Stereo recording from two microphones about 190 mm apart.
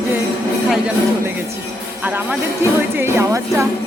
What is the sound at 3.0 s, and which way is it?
Speech, 15° right (ahead or behind).